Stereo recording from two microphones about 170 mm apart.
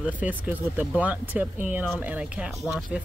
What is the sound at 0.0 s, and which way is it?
Speech, 10° right (ahead or behind).